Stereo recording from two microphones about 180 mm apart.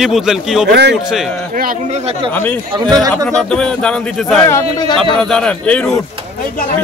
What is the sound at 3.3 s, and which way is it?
Speech, 5° left (ahead or behind).